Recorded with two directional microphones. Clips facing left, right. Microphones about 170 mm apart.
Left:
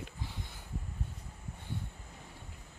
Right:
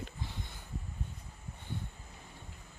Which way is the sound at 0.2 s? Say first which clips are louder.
Right 1 dB; 10° left (ahead or behind).